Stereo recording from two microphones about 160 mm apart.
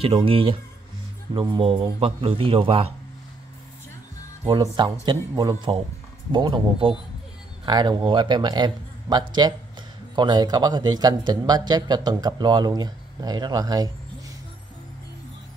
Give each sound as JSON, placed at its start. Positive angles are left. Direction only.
{"t": 0.0, "sound": "a man's voice", "side_deg": -35}
{"t": 5.0, "sound": "a man's voice", "side_deg": -25}